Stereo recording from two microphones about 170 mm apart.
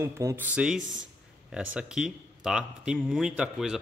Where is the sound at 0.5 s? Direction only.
5° right (ahead or behind).